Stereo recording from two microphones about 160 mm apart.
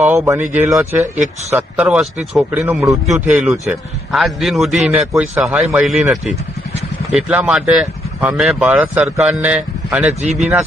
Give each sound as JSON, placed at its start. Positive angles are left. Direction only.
{"t": 0.0, "sound": "a man's voice", "side_deg": -15}
{"t": 10.2, "sound": "speech", "side_deg": -45}